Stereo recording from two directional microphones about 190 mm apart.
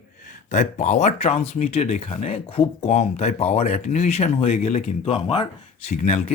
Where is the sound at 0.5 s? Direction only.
40° left (ahead or behind).